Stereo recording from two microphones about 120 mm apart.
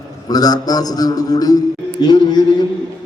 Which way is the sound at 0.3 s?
30° left (ahead or behind).